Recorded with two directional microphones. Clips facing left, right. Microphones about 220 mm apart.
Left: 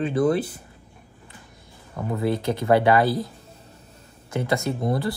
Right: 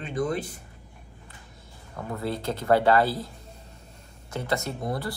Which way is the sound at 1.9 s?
20° left (ahead or behind).